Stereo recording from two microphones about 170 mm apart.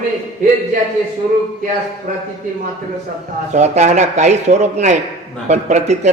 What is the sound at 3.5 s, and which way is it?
Speech, 40° right (ahead or behind).